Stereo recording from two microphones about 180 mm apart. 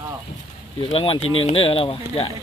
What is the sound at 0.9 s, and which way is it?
Speech, 30° left (ahead or behind).